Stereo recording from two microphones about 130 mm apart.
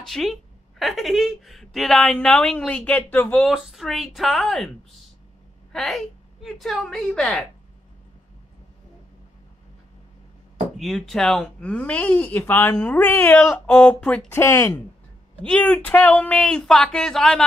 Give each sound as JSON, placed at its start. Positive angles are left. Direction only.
{"t": 0.0, "sound": "a woman's voice", "side_deg": 0}
{"t": 3.4, "sound": "a woman's voice", "side_deg": -5}
{"t": 10.8, "sound": "speech", "side_deg": 0}
{"t": 14.4, "sound": "speech", "side_deg": 20}
{"t": 15.4, "sound": "speech", "side_deg": 10}